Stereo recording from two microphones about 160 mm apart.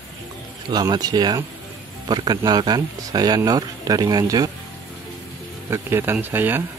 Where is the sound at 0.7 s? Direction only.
25° right (ahead or behind).